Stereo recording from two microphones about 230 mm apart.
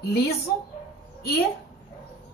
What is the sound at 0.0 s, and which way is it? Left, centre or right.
Speech, left.